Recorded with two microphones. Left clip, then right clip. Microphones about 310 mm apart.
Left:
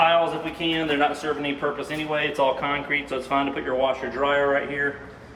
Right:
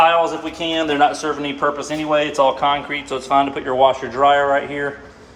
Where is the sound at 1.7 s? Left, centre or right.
Centre.